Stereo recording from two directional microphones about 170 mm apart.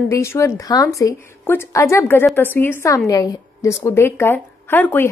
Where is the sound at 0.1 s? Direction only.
15° left (ahead or behind).